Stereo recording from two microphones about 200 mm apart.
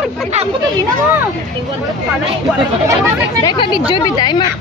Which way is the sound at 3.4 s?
25° left (ahead or behind).